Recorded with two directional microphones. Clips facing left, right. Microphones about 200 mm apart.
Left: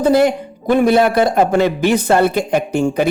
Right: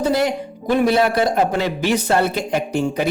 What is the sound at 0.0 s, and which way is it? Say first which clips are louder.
Speech: left 6 dB; 50° left (ahead or behind).